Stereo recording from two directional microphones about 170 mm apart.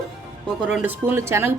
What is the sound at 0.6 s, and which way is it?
Speech, 10° right (ahead or behind).